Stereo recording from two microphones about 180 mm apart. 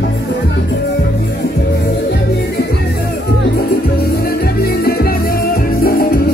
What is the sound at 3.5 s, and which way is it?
Music, 60° left (ahead or behind).